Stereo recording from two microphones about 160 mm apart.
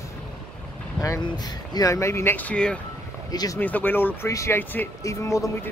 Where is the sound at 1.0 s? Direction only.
25° left (ahead or behind); by 2.7 s 10° left (ahead or behind).